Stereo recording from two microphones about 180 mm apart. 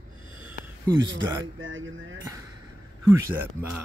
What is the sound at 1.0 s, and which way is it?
Speech, 90° right.